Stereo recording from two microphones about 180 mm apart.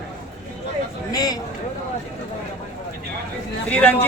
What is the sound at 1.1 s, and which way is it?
Speech, 20° left (ahead or behind).